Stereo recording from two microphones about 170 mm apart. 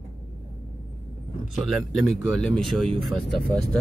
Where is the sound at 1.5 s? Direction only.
Centre (ahead or behind).